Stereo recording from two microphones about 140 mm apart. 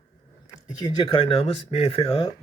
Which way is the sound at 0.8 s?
30° left (ahead or behind).